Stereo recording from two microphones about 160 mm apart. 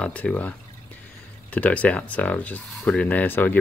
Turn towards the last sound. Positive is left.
turn(degrees=10)  # may be behind; listen again after turning